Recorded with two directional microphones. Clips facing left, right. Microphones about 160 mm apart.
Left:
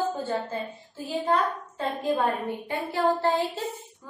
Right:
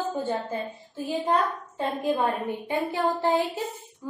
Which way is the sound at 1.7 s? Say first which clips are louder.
Right 1 dB; 15° right (ahead or behind).